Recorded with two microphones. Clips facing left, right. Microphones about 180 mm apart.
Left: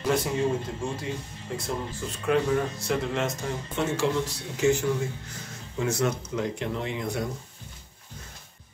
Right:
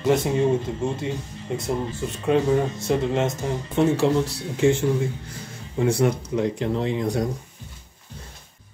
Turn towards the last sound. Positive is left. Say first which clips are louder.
# right 7 dB
turn(degrees=-35)  # may be behind; listen again after turning